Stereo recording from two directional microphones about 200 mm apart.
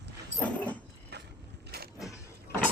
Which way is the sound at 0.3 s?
5° left (ahead or behind).